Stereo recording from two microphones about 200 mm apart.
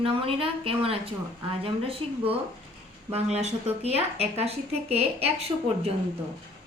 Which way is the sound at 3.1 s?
30° right (ahead or behind).